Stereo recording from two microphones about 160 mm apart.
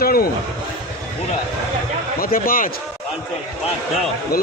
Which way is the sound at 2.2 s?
65° left (ahead or behind).